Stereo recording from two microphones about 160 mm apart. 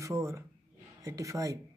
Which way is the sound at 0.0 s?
20° right (ahead or behind).